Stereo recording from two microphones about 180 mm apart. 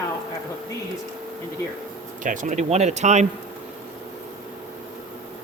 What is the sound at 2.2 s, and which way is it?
Speech, 45° right (ahead or behind).